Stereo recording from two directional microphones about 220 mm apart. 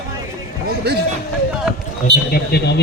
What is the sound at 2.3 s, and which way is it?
Speech, 45° left (ahead or behind).